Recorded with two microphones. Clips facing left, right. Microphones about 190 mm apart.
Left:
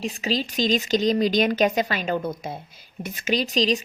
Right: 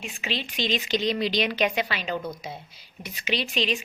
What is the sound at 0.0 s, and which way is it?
A woman's voice, 35° left (ahead or behind).